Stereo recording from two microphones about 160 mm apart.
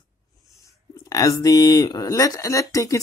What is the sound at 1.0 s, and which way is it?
Speech, 20° left (ahead or behind).